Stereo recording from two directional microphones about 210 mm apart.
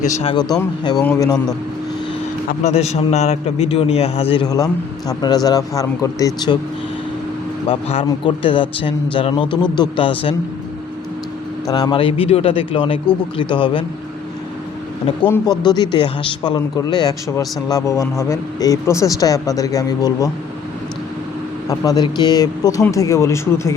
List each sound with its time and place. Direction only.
0.0 s a man's voice: 30° left (ahead or behind)
1.2 s speech: 15° left (ahead or behind)
2.5 s a man's voice: 30° left (ahead or behind)
7.7 s a man's voice: 25° left (ahead or behind)
11.7 s a man's voice: 20° left (ahead or behind)
15.2 s speech: 15° left (ahead or behind)
21.7 s a man's voice: 20° left (ahead or behind)